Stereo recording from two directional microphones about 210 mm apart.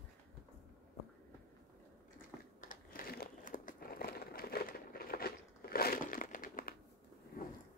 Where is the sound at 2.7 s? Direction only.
40° left (ahead or behind).